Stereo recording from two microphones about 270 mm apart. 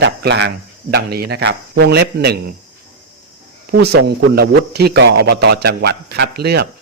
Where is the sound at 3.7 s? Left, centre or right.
Right.